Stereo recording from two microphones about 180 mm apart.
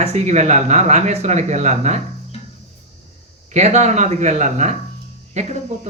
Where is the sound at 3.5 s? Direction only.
40° right (ahead or behind).